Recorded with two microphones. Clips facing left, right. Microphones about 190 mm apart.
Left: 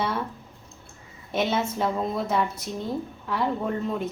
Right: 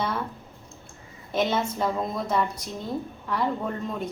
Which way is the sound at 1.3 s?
5° left (ahead or behind).